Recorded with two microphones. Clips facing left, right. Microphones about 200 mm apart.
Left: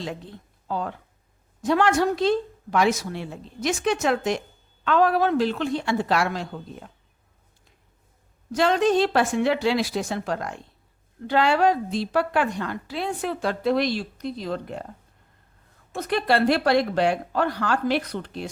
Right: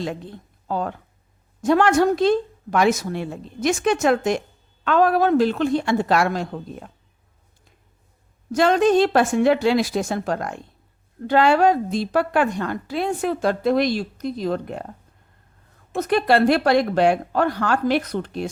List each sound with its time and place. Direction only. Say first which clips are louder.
0.7 s a woman's voice: right 3 dB; 50° right (ahead or behind)
8.5 s a woman's voice: right 4 dB; 50° right (ahead or behind)
16.0 s a woman's voice: right 4 dB; 50° right (ahead or behind)